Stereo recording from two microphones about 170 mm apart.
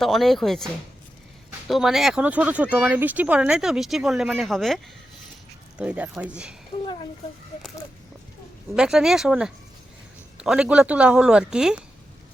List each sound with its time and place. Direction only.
0.0 s speech: centre (ahead or behind)
6.8 s speech: 30° left (ahead or behind)
8.7 s speech: 5° right (ahead or behind)